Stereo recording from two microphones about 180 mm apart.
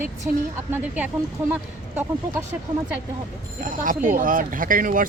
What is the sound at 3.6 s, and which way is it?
Speech, 50° right (ahead or behind).